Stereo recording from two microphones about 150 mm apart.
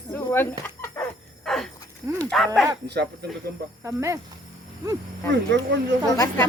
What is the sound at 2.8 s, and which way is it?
Speech, 90° right.